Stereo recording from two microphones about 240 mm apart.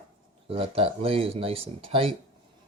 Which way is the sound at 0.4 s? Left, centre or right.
Right.